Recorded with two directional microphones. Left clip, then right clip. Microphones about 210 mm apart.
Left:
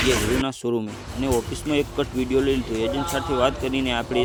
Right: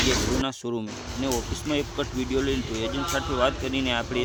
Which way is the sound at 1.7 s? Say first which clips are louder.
Left 5 dB; 10° left (ahead or behind).